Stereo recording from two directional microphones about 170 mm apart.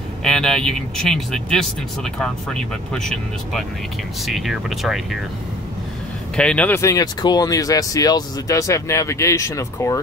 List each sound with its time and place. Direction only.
0.2 s speech: 5° left (ahead or behind)
6.3 s speech: 5° left (ahead or behind)